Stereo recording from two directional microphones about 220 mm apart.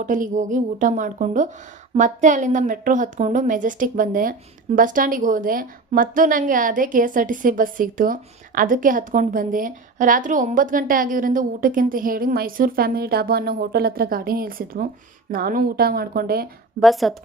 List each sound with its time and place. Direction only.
0.0 s a woman's voice: 35° right (ahead or behind)
16.8 s a woman's voice: centre (ahead or behind)